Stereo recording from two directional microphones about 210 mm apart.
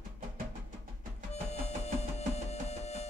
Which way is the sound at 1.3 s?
30° left (ahead or behind).